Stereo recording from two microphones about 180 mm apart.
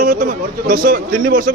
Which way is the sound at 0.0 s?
45° right (ahead or behind).